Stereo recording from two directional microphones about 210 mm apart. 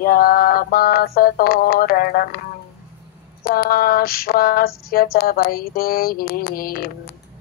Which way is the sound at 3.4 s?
45° left (ahead or behind).